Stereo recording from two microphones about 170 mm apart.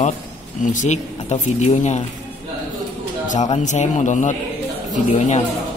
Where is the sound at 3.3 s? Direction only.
45° left (ahead or behind).